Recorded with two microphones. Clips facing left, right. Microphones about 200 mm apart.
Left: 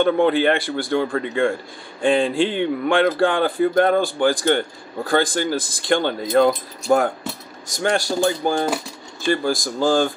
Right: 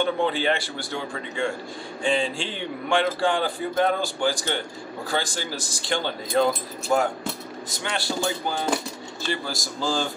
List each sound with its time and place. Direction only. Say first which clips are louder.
0.0 s speech: left 7 dB; 55° left (ahead or behind)